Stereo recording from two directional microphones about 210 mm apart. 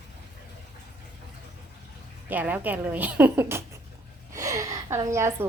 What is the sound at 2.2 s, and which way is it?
A woman's voice, 10° right (ahead or behind).